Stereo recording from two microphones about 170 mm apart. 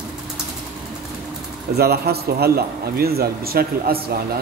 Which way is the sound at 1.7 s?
70° right (ahead or behind).